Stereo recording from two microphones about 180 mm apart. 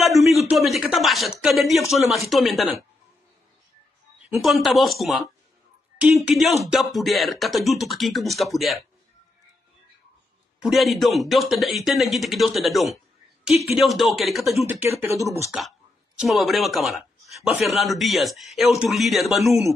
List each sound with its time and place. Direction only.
0.0 s a man's voice: centre (ahead or behind)
4.4 s a man's voice: centre (ahead or behind)
10.6 s a man's voice: centre (ahead or behind)
15.0 s speech: 15° right (ahead or behind)
16.2 s a man's voice: centre (ahead or behind)